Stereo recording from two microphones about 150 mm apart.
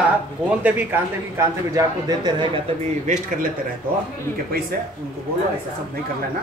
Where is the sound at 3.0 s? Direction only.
55° right (ahead or behind).